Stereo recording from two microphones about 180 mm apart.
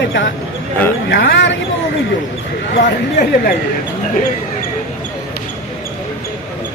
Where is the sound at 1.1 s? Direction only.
85° left.